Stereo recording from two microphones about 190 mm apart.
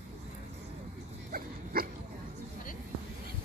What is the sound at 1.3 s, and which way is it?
Dog, 50° right (ahead or behind).